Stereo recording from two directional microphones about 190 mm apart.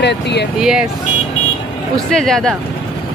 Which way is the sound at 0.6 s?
5° right (ahead or behind).